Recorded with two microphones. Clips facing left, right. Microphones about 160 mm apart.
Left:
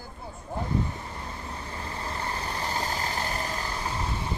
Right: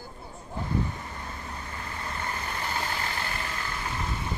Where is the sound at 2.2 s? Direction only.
30° left (ahead or behind).